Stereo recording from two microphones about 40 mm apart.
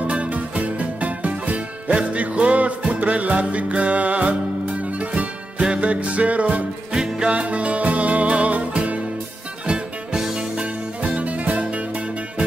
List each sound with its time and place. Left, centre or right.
0.0 s music: right
6.9 s music: centre
7.2 s music: right
10.3 s music: right